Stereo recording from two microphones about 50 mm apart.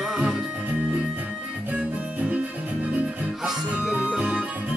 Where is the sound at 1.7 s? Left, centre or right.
Right.